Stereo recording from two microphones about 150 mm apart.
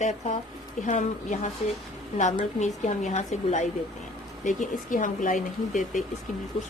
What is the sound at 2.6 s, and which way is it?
Speech, 50° left (ahead or behind).